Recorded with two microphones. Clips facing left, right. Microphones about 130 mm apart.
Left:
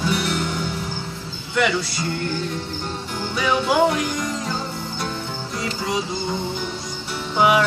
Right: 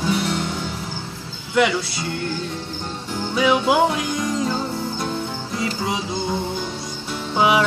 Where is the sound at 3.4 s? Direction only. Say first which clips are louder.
Right 3 dB; 15° right (ahead or behind).